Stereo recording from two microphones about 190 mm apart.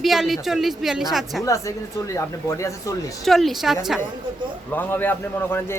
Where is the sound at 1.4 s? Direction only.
15° left (ahead or behind).